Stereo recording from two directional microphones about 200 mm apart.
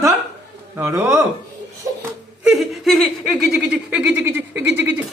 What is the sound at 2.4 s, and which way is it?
Speech, centre (ahead or behind).